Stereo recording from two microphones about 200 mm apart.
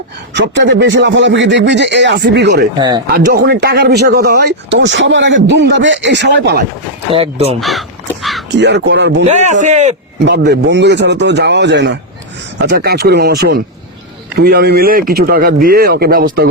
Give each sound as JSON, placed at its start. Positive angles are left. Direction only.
{"t": 0.3, "sound": "speech", "side_deg": -65}
{"t": 7.1, "sound": "speech", "side_deg": -30}
{"t": 7.6, "sound": "speech", "side_deg": 0}
{"t": 8.2, "sound": "a sound", "side_deg": 0}
{"t": 8.5, "sound": "speech", "side_deg": -60}
{"t": 9.2, "sound": "a man's voice", "side_deg": -35}
{"t": 10.2, "sound": "speech", "side_deg": -55}